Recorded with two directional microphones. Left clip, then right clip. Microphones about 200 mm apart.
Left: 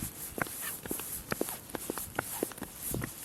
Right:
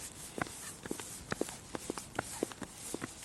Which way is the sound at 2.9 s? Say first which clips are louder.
Left 3 dB; 20° left (ahead or behind).